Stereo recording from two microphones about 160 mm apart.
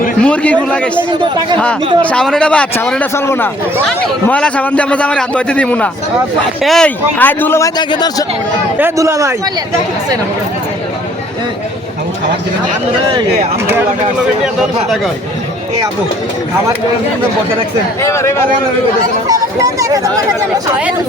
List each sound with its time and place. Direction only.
0.2 s a man's voice: 10° left (ahead or behind)
2.0 s a man's voice: 5° left (ahead or behind)
7.8 s speech: 25° left (ahead or behind)
8.8 s a man's voice: 20° right (ahead or behind)
14.4 s a man's voice: centre (ahead or behind)
18.0 s a man's voice: 15° left (ahead or behind)
19.3 s speech: 20° right (ahead or behind)